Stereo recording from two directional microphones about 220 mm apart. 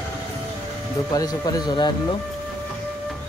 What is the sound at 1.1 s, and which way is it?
Speech, 15° left (ahead or behind).